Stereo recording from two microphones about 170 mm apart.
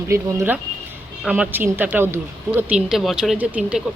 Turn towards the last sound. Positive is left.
turn(degrees=-5)  # may be behind; listen again after turning